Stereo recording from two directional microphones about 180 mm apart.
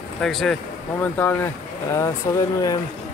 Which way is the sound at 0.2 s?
Centre (ahead or behind).